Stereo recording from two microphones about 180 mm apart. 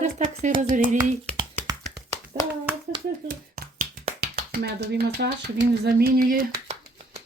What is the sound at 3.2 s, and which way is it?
Finger snapping, 50° right (ahead or behind).